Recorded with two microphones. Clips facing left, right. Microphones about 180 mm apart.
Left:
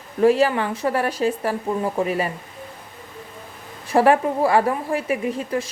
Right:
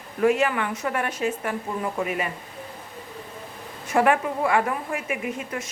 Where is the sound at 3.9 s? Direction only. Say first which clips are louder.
Left 4 dB; 35° left (ahead or behind).